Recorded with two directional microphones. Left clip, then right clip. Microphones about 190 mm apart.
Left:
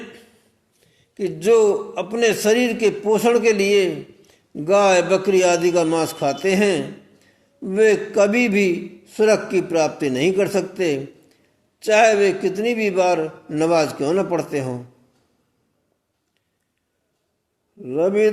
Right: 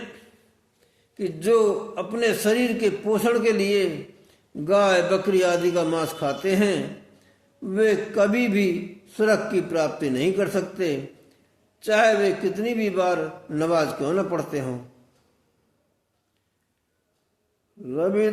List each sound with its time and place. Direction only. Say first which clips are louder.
1.1 s a man's voice: left 4 dB; 30° left (ahead or behind)
17.8 s a man's voice: left 5 dB; 35° left (ahead or behind)